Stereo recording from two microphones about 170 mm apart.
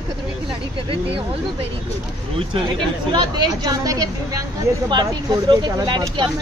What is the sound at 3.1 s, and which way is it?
Speech, 25° right (ahead or behind).